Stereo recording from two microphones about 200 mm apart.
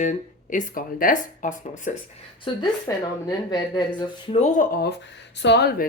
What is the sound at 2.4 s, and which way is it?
Speech, 20° left (ahead or behind).